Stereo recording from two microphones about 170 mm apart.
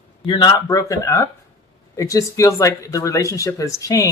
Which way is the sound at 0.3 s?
25° left (ahead or behind).